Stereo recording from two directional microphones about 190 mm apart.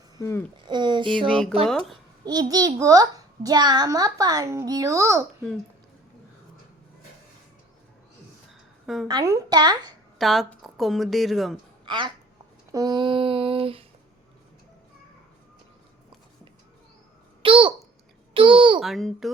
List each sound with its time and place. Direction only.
0.2 s speech: 15° left (ahead or behind)
0.7 s a child's voice: 25° right (ahead or behind)
1.3 s a woman's voice: 5° left (ahead or behind)
2.2 s a child's voice: 20° right (ahead or behind)
9.0 s a child's voice: 20° right (ahead or behind)
10.2 s a woman's voice: centre (ahead or behind)
11.9 s a child's voice: 25° right (ahead or behind)
12.7 s female singing: 20° right (ahead or behind)
17.4 s babbling: 30° right (ahead or behind)
18.3 s a child's voice: 25° right (ahead or behind)
18.8 s a woman's voice: centre (ahead or behind)